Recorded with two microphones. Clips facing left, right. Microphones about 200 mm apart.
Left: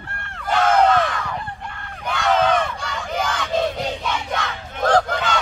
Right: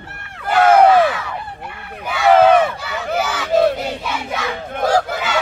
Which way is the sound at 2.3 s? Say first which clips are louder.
Right 8 dB; 60° right (ahead or behind).